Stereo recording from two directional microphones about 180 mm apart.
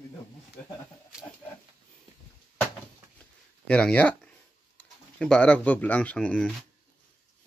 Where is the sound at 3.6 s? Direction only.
5° left (ahead or behind).